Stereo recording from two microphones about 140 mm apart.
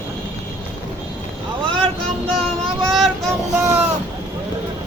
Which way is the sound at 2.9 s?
Centre (ahead or behind).